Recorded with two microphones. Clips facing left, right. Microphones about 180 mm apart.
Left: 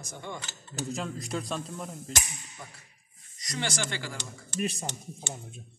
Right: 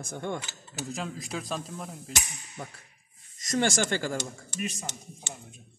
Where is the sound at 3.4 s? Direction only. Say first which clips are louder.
Right 7 dB; 50° right (ahead or behind).